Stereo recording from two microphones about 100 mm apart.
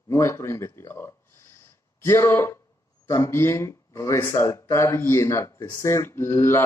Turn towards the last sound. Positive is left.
turn(degrees=25)  # may be behind; listen again after turning